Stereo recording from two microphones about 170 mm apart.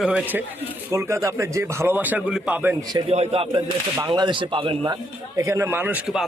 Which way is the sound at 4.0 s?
25° right (ahead or behind).